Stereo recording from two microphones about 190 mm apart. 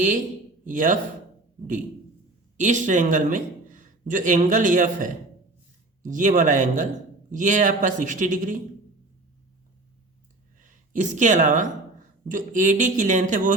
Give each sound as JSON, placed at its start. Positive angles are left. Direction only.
{"t": 0.6, "sound": "a man's voice", "side_deg": -45}
{"t": 2.6, "sound": "a man's voice", "side_deg": -40}
{"t": 10.6, "sound": "speech", "side_deg": -40}